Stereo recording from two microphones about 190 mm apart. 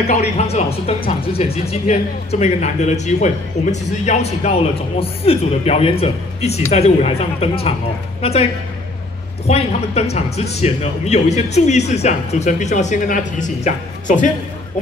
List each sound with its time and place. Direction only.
0.2 s a man's voice: 35° left (ahead or behind)
9.5 s speech: 35° left (ahead or behind)